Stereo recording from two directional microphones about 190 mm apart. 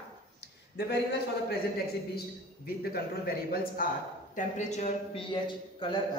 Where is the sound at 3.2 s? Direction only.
50° left (ahead or behind).